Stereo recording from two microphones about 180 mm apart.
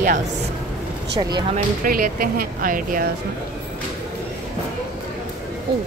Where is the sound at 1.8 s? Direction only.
50° right (ahead or behind).